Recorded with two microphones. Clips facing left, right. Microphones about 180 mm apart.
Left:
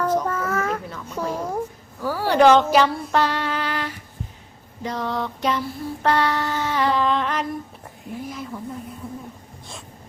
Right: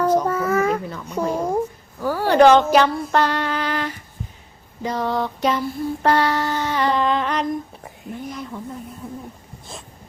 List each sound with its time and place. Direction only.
0.0 s child singing: 15° right (ahead or behind)
1.1 s a sound: 15° right (ahead or behind)
2.0 s a sound: 5° left (ahead or behind)
2.6 s female singing: centre (ahead or behind)
4.8 s mantra: 5° right (ahead or behind)
8.1 s speech: centre (ahead or behind)